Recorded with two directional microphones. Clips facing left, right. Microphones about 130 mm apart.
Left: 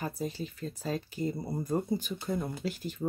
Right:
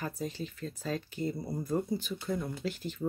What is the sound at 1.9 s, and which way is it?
Speech, 45° left (ahead or behind).